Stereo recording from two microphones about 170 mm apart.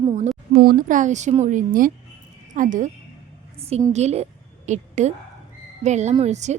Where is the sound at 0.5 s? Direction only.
60° right (ahead or behind).